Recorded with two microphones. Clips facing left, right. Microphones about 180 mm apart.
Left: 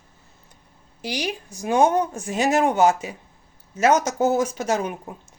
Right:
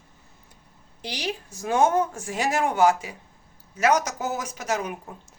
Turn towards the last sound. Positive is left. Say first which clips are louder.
# left 5 dB
turn(degrees=30)  # may be behind; listen again after turning